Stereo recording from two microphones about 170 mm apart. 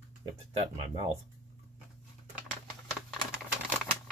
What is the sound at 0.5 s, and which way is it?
Speech, 35° right (ahead or behind).